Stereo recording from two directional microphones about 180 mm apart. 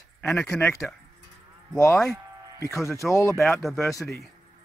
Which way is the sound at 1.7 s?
15° left (ahead or behind).